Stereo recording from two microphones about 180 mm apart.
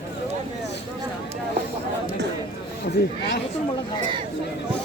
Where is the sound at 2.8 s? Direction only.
60° left (ahead or behind).